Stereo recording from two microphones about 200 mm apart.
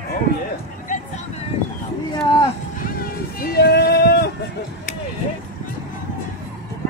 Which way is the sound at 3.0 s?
50° left (ahead or behind).